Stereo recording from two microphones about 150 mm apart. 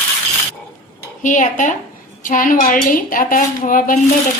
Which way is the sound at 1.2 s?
60° left (ahead or behind).